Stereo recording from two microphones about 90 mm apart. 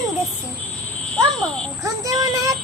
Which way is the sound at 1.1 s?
10° left (ahead or behind).